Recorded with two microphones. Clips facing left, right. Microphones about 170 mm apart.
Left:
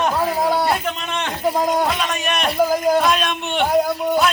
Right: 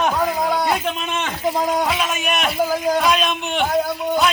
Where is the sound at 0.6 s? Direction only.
Centre (ahead or behind).